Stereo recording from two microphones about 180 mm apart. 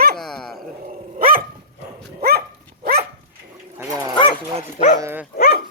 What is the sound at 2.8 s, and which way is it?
Dog, 55° right (ahead or behind).